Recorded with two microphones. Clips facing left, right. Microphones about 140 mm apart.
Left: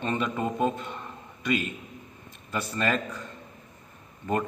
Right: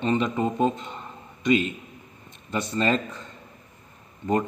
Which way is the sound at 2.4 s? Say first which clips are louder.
Right 4 dB; 20° right (ahead or behind).